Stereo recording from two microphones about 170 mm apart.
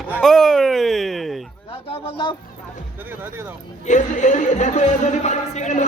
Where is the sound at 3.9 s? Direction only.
45° left (ahead or behind).